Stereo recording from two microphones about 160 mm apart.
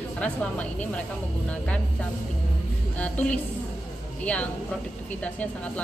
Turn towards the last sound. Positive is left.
turn(degrees=10)  # may be behind; listen again after turning